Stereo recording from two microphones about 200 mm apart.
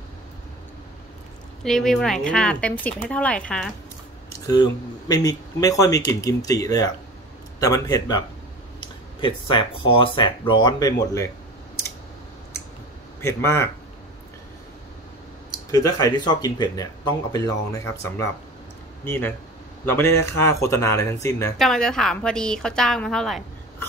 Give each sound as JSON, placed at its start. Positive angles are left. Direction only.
{"t": 1.6, "sound": "speech", "side_deg": 0}
{"t": 4.5, "sound": "speech", "side_deg": 20}
{"t": 9.2, "sound": "speech", "side_deg": 25}
{"t": 13.2, "sound": "speech", "side_deg": 10}
{"t": 15.7, "sound": "speech", "side_deg": 15}
{"t": 21.5, "sound": "speech", "side_deg": 0}